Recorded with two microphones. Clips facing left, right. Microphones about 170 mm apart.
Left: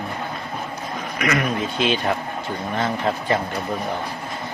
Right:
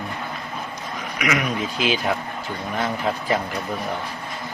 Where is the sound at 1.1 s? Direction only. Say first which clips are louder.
Left 1 dB; centre (ahead or behind).